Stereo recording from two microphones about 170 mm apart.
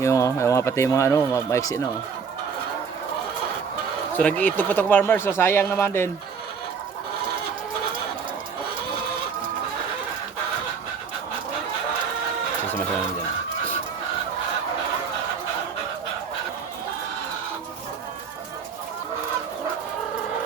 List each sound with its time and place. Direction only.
0.0 s speech: 20° left (ahead or behind)
4.2 s speech: 10° left (ahead or behind)